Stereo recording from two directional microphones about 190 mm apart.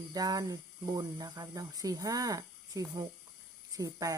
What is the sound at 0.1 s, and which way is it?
Speech, 20° right (ahead or behind).